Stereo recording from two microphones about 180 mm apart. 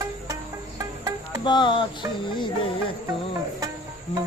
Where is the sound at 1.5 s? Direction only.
25° left (ahead or behind).